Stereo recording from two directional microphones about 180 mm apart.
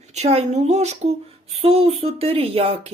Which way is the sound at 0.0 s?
40° right (ahead or behind).